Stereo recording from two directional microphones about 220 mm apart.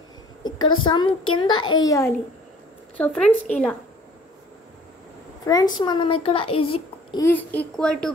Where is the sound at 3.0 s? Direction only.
5° left (ahead or behind).